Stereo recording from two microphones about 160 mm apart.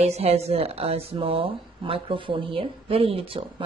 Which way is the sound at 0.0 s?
40° right (ahead or behind).